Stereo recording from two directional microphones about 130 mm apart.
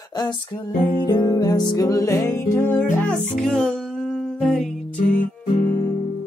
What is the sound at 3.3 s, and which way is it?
Music, 5° left (ahead or behind).